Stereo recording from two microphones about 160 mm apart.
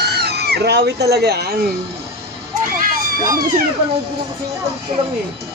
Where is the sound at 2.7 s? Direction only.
65° right (ahead or behind).